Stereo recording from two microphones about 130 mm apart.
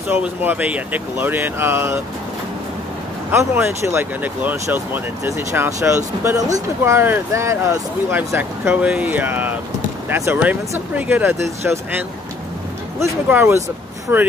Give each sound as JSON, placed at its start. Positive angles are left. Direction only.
{"t": 0.1, "sound": "speech", "side_deg": -15}
{"t": 3.3, "sound": "speech", "side_deg": -20}
{"t": 13.0, "sound": "speech", "side_deg": -15}